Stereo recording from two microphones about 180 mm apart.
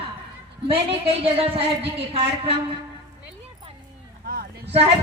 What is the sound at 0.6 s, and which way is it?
A woman's voice, 30° right (ahead or behind).